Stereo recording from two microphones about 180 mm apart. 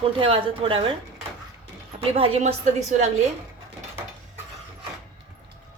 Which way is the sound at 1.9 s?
30° right (ahead or behind).